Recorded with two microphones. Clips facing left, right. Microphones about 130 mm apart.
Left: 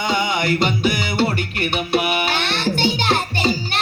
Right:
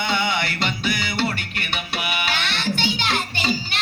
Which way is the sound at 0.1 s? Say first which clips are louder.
Left 7 dB; 45° left (ahead or behind).